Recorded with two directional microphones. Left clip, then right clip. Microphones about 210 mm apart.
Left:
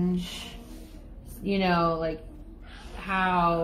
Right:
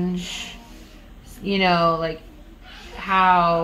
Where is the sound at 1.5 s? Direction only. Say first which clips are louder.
Right 7 dB; 30° right (ahead or behind).